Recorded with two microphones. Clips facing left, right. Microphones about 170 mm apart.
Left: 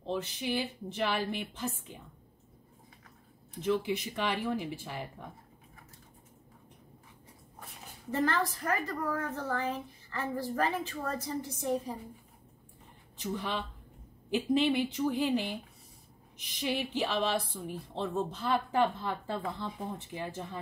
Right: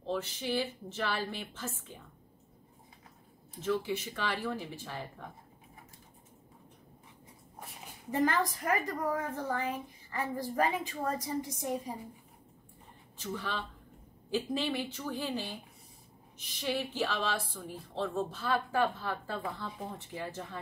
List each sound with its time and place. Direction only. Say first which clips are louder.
0.0 s a woman's voice: left 1 dB; 15° left (ahead or behind)
3.8 s a woman's voice: left 2 dB; 15° left (ahead or behind)
8.1 s a woman's voice: right 1 dB; 15° right (ahead or behind)
13.2 s a woman's voice: left 3 dB; 15° left (ahead or behind)